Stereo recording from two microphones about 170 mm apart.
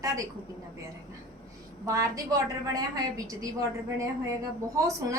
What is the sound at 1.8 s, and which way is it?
A woman's voice, 20° right (ahead or behind).